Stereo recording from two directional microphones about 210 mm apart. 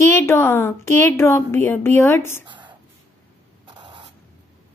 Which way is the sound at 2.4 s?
20° right (ahead or behind).